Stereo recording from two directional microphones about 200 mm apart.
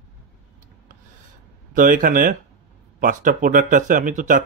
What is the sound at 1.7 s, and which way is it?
Speech, 45° right (ahead or behind).